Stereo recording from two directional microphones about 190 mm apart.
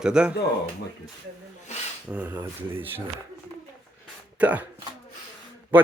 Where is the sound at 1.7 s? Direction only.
35° left (ahead or behind).